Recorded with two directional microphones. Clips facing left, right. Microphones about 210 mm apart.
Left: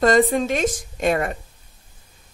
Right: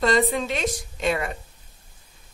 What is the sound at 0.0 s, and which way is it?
A woman's voice, 45° left (ahead or behind).